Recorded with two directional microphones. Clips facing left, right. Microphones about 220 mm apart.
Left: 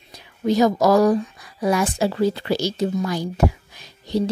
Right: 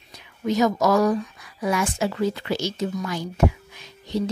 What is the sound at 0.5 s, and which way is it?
Speech, 35° left (ahead or behind).